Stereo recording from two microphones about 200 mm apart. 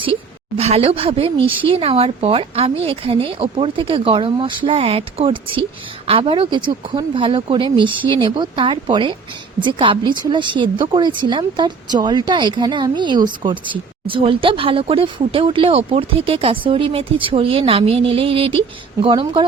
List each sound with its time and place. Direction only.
0.0 s a woman's voice: 25° right (ahead or behind)